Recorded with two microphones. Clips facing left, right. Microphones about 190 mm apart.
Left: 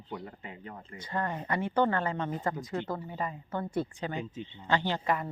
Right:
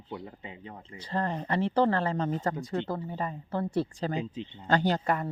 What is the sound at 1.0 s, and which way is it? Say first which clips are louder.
Speech: right 3 dB; 30° right (ahead or behind).